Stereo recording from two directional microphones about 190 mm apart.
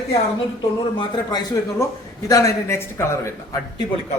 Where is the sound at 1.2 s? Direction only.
20° left (ahead or behind).